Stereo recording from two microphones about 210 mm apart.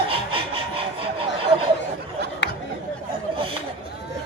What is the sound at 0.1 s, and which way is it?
Sawing, 25° right (ahead or behind).